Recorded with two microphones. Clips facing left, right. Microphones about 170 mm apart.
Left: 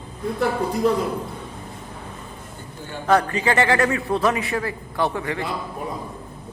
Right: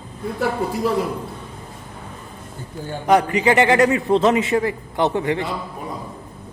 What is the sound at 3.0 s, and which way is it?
A man's voice, 15° right (ahead or behind).